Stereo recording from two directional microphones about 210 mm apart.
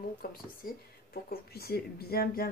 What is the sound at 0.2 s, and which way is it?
Speech, 45° left (ahead or behind).